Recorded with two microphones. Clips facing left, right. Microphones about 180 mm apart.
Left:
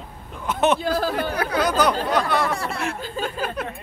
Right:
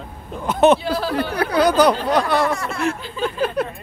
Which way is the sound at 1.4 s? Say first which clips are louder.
Right 6 dB; 35° right (ahead or behind).